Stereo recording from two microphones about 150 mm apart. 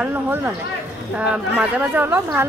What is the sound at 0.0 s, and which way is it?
Speech, 10° right (ahead or behind).